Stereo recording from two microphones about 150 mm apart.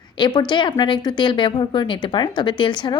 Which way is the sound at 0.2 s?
30° left (ahead or behind).